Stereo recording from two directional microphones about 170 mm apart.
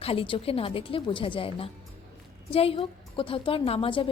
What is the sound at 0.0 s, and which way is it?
A woman's voice, 35° left (ahead or behind).